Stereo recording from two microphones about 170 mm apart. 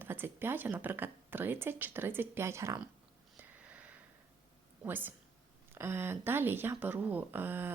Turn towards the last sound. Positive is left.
turn(degrees=-10)  # may be behind; listen again after turning